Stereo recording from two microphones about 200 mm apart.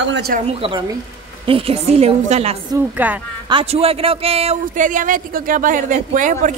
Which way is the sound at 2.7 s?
10° right (ahead or behind).